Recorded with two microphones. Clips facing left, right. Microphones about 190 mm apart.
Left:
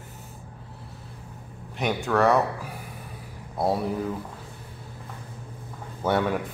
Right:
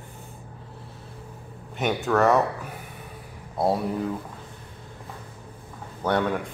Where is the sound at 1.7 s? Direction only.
Centre (ahead or behind).